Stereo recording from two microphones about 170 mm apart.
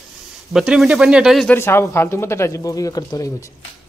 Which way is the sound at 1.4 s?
15° left (ahead or behind).